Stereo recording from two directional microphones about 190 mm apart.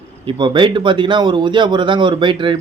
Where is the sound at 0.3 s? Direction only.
25° right (ahead or behind).